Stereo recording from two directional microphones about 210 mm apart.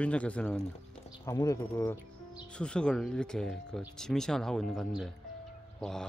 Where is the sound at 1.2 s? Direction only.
15° left (ahead or behind).